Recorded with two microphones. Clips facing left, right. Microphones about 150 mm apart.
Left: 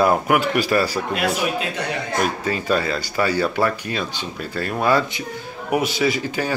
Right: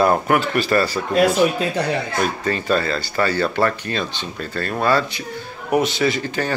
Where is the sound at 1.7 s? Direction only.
35° right (ahead or behind).